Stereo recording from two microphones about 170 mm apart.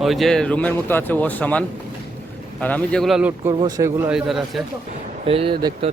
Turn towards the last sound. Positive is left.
turn(degrees=-25)  # may be behind; listen again after turning